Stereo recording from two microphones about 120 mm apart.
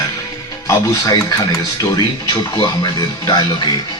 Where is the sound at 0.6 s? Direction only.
25° left (ahead or behind).